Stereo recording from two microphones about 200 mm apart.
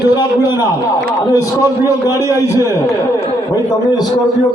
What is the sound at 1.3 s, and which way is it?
A man's voice, 15° left (ahead or behind).